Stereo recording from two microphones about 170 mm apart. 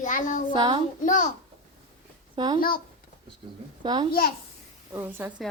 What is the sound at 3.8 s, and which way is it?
Speech, 25° right (ahead or behind).